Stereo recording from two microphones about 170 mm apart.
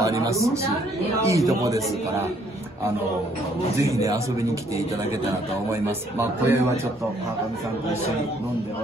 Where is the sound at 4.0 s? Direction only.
20° right (ahead or behind).